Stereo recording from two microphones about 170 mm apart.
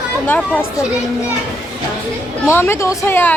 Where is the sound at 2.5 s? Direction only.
15° left (ahead or behind).